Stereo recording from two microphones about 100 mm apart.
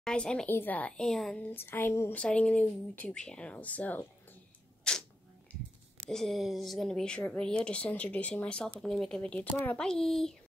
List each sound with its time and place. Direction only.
0.0 s speech: 10° left (ahead or behind)
1.5 s a sound: 20° left (ahead or behind)
2.1 s speech: 10° left (ahead or behind)
4.9 s camera: 10° left (ahead or behind)
6.0 s speech: 5° left (ahead or behind)
9.8 s a child's voice: 5° left (ahead or behind)